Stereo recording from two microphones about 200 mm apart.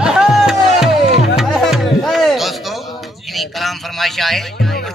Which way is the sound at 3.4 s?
Centre (ahead or behind).